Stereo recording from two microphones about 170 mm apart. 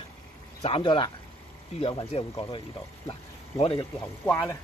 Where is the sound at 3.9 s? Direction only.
15° left (ahead or behind).